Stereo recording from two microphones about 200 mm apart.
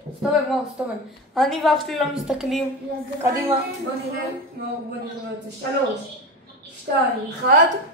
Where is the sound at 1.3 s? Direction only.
Centre (ahead or behind).